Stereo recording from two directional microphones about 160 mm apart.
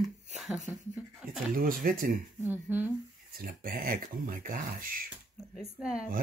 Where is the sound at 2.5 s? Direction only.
10° right (ahead or behind).